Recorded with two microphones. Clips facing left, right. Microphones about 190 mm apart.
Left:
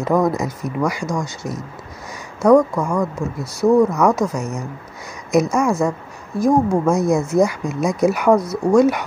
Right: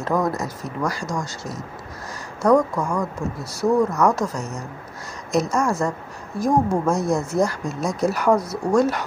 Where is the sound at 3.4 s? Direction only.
10° right (ahead or behind).